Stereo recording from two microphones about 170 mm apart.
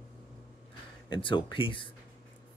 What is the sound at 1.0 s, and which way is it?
Speech, 30° left (ahead or behind).